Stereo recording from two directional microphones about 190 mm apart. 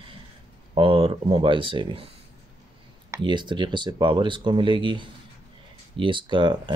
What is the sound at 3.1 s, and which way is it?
Speech, 25° right (ahead or behind).